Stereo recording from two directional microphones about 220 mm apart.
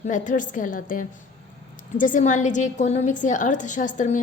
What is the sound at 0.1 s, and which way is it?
A woman's voice, 35° left (ahead or behind).